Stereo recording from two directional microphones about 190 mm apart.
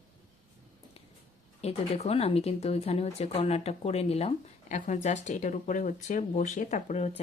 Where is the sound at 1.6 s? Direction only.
35° left (ahead or behind).